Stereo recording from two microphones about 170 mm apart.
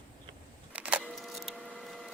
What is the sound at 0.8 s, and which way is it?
Keys jangling, 10° right (ahead or behind).